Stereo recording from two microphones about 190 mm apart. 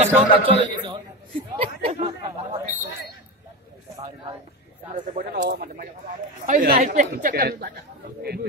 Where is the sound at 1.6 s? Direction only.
30° right (ahead or behind).